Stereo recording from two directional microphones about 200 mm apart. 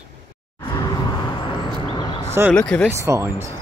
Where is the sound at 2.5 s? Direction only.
5° left (ahead or behind).